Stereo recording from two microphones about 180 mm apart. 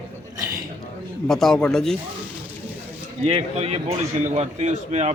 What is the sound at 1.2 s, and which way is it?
Speech, centre (ahead or behind).